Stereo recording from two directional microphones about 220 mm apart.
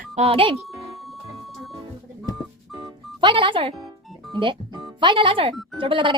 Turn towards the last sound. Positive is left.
turn(degrees=-20)  # may be behind; listen again after turning